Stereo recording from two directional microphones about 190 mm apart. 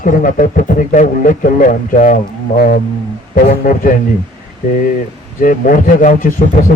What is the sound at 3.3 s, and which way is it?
Speech, 45° left (ahead or behind).